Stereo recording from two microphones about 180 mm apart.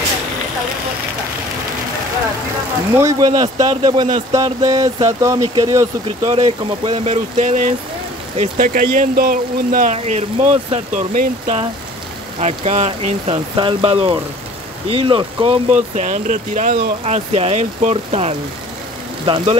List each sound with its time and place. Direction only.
3.0 s speech: 20° right (ahead or behind); by 9.9 s 50° right (ahead or behind)
9.9 s speech: 40° right (ahead or behind)